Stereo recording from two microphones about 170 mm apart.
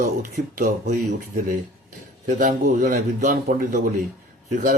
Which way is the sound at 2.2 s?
50° right (ahead or behind).